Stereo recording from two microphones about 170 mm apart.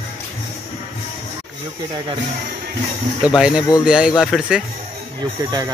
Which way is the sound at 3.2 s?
5° right (ahead or behind).